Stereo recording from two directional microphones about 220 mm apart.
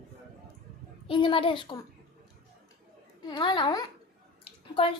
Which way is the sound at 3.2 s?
20° left (ahead or behind).